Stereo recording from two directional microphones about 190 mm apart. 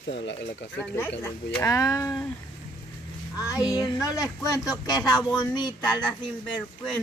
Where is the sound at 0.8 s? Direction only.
10° left (ahead or behind).